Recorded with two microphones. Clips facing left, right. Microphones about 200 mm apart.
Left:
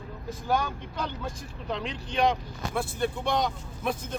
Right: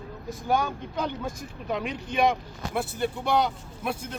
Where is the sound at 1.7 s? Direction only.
10° right (ahead or behind).